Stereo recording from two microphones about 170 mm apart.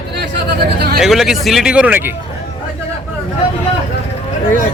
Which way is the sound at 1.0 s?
Centre (ahead or behind).